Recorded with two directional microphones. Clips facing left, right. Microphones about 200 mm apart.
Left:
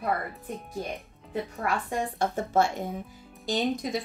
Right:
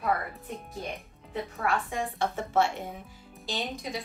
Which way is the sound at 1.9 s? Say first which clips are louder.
Left 2 dB; 40° left (ahead or behind).